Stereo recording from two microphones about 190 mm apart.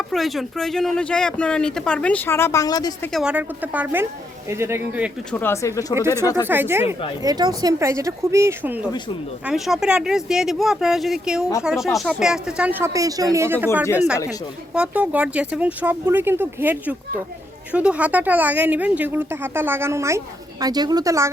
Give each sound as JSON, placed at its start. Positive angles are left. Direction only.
{"t": 0.1, "sound": "speech", "side_deg": 0}
{"t": 3.1, "sound": "speech", "side_deg": 0}
{"t": 5.3, "sound": "speech", "side_deg": 10}
{"t": 6.5, "sound": "speech", "side_deg": -10}
{"t": 14.8, "sound": "speech", "side_deg": -5}